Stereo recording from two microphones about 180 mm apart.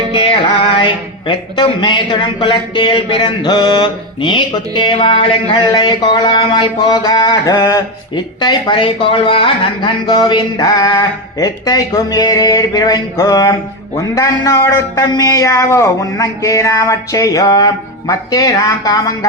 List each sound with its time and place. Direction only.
1.3 s speech: 25° left (ahead or behind)